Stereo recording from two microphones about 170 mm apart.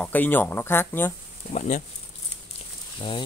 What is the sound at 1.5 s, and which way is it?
Speech, 45° left (ahead or behind).